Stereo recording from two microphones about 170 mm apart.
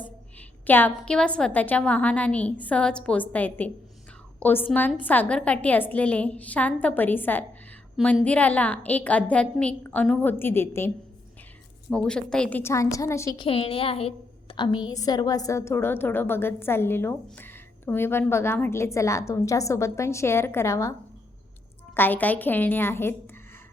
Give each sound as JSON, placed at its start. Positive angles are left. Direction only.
{"t": 0.7, "sound": "a woman's voice", "side_deg": 10}
{"t": 13.4, "sound": "a woman's voice", "side_deg": 35}
{"t": 21.9, "sound": "a woman's voice", "side_deg": 10}